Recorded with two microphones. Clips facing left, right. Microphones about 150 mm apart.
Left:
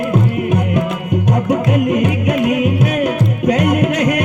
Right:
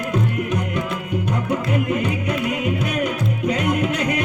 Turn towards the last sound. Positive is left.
turn(degrees=65)  # may be behind; listen again after turning